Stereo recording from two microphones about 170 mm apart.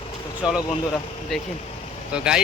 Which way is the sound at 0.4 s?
5° right (ahead or behind).